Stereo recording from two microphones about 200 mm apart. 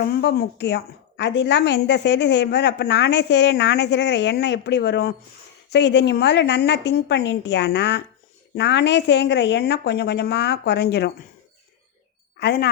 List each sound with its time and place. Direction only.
0.2 s a woman's voice: 55° left (ahead or behind)
12.4 s speech: 55° left (ahead or behind)